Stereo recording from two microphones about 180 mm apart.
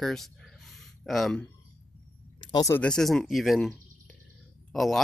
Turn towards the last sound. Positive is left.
turn(degrees=0)  # may be behind; listen again after turning